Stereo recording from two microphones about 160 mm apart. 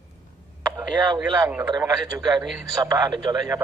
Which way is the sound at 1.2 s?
10° right (ahead or behind).